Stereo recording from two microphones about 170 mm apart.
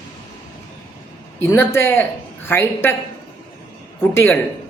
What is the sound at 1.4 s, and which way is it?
Speech, 15° left (ahead or behind).